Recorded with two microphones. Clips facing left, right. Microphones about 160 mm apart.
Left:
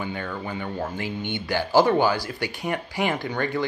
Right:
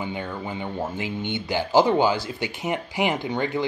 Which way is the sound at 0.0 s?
15° right (ahead or behind).